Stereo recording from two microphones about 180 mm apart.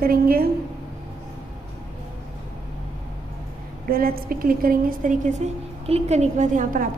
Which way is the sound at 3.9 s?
55° right (ahead or behind).